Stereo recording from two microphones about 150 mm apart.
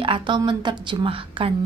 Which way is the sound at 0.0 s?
35° right (ahead or behind).